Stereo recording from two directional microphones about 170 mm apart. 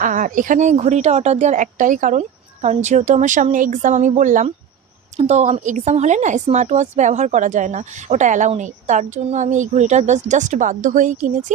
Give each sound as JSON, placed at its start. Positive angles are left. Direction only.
{"t": 0.0, "sound": "a woman's voice", "side_deg": -50}